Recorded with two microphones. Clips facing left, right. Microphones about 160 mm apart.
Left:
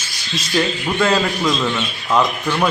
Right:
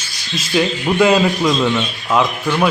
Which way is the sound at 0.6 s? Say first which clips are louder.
Right 4 dB; 15° right (ahead or behind).